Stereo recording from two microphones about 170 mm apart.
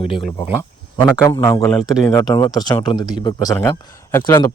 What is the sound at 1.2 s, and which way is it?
A man's voice, 15° left (ahead or behind).